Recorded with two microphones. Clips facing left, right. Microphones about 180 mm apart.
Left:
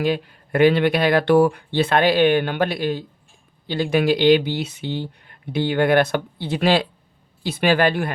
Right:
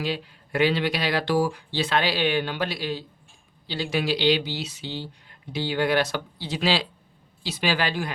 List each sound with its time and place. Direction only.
0.0 s speech: 55° left (ahead or behind)